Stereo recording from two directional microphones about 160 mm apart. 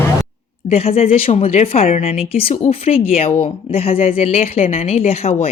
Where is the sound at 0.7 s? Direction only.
35° left (ahead or behind).